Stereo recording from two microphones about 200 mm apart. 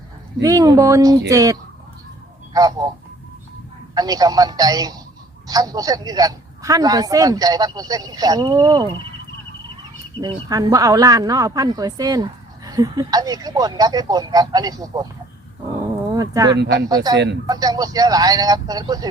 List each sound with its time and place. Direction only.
0.4 s speech: 20° right (ahead or behind)
3.9 s speech: 20° right (ahead or behind)
10.2 s speech: 20° right (ahead or behind)
16.0 s a sound: 15° right (ahead or behind)
16.9 s speech: 20° right (ahead or behind)